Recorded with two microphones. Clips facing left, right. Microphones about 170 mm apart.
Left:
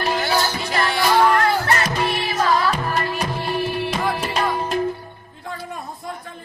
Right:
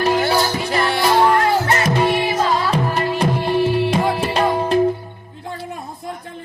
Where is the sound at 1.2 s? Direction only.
25° right (ahead or behind).